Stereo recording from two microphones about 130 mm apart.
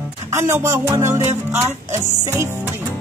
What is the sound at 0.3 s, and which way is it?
Music, 20° right (ahead or behind).